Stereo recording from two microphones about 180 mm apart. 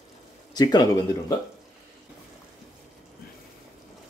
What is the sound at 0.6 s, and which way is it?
Speech, 20° left (ahead or behind).